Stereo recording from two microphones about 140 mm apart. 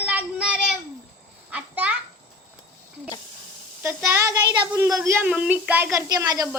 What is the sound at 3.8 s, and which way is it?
Speech, 20° right (ahead or behind).